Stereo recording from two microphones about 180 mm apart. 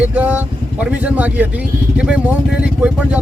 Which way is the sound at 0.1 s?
10° right (ahead or behind).